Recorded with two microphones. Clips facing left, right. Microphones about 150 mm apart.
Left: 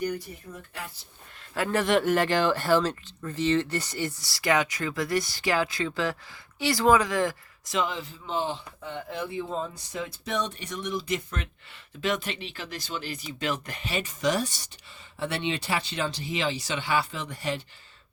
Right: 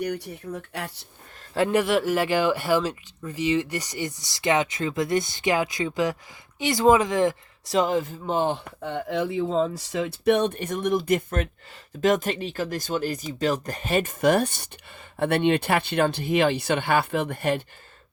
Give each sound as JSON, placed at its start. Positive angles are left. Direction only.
{"t": 0.0, "sound": "speech", "side_deg": -70}
{"t": 1.7, "sound": "speech", "side_deg": -5}
{"t": 7.7, "sound": "speech", "side_deg": -40}